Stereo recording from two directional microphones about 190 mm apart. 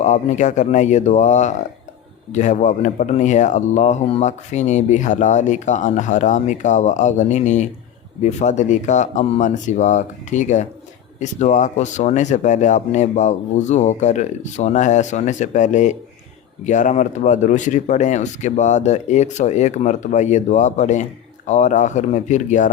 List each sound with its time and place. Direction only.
0.0 s speech: 40° left (ahead or behind)